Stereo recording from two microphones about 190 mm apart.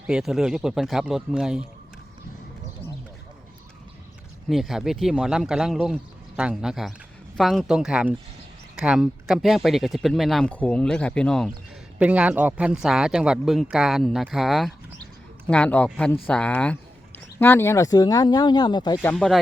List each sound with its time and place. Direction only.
0.1 s speech: centre (ahead or behind)
4.4 s speech: centre (ahead or behind)
11.9 s speech: 5° right (ahead or behind); by 18.9 s 20° left (ahead or behind)
19.0 s speech: centre (ahead or behind)